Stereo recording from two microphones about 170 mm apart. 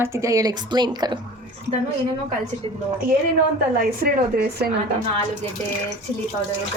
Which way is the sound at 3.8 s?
60° right (ahead or behind).